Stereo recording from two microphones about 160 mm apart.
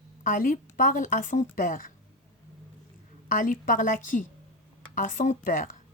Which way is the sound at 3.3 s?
55° left (ahead or behind).